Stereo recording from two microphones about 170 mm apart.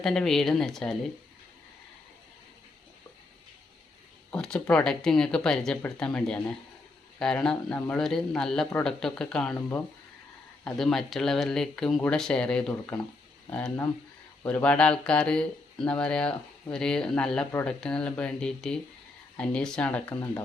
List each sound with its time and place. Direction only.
0.0 s speech: 5° left (ahead or behind)
4.3 s speech: 5° left (ahead or behind)